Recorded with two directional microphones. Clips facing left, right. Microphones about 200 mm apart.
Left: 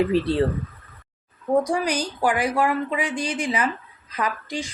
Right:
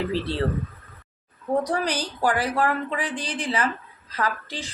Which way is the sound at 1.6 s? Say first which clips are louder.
Left 2 dB; 10° left (ahead or behind).